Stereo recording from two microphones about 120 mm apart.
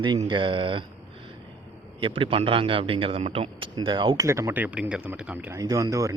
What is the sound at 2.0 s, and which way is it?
A man's voice, 45° right (ahead or behind).